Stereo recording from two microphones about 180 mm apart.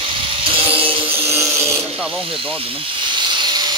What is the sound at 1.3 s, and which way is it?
Wood, 15° right (ahead or behind).